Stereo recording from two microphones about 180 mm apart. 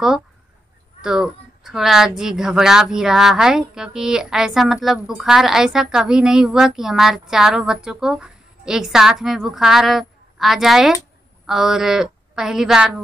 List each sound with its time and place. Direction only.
1.0 s a woman's voice: 5° right (ahead or behind)